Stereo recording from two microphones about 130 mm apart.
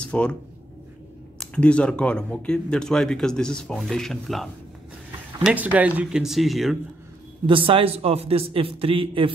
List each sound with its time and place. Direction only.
0.0 s speech: 10° left (ahead or behind)
1.4 s speech: 10° left (ahead or behind)
5.4 s speech: 10° right (ahead or behind)
7.4 s a man's voice: 40° right (ahead or behind)